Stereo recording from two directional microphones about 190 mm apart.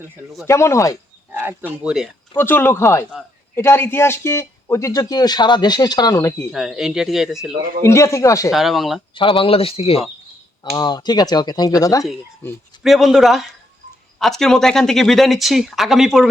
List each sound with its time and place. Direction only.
0.4 s a man's voice: 15° left (ahead or behind)
1.3 s a sound: 10° right (ahead or behind)
1.8 s speech: 5° right (ahead or behind)
2.3 s a man's voice: 10° left (ahead or behind)
6.5 s speech: centre (ahead or behind)
7.8 s a man's voice: 15° left (ahead or behind)
8.4 s speech: centre (ahead or behind)
9.1 s a man's voice: 25° left (ahead or behind); by 12.6 s 10° left (ahead or behind)
12.8 s speech: centre (ahead or behind)